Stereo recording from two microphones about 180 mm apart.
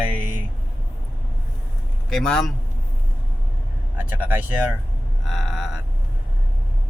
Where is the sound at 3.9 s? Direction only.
10° right (ahead or behind).